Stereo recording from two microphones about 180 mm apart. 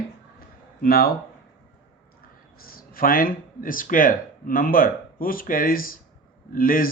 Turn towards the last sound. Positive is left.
turn(degrees=50)  # may be behind; listen again after turning